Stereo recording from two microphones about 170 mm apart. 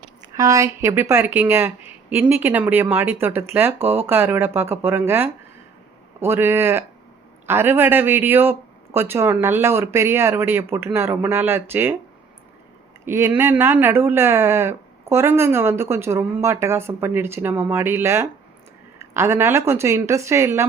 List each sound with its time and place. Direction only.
0.3 s speech: 20° right (ahead or behind)
13.1 s speech: 15° right (ahead or behind)